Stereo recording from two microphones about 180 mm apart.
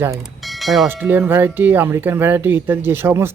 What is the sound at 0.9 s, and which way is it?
Speech, 10° right (ahead or behind).